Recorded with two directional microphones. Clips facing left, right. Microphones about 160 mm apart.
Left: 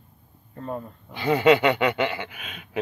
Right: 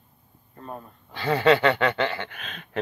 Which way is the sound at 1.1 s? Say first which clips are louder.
Left 2 dB; 15° left (ahead or behind).